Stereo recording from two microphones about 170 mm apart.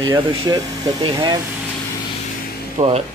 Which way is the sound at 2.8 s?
40° right (ahead or behind).